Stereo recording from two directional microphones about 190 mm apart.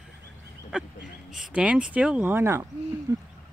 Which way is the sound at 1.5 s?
5° right (ahead or behind).